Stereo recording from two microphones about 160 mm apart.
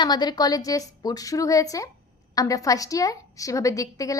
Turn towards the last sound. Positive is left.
turn(degrees=20)  # may be behind; listen again after turning